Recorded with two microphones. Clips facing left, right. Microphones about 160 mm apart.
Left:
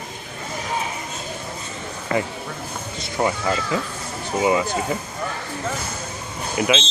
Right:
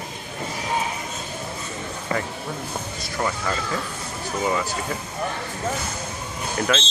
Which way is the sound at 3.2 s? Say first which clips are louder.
Left 4 dB; 20° left (ahead or behind).